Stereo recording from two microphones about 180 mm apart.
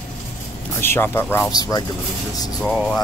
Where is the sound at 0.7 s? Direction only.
15° left (ahead or behind).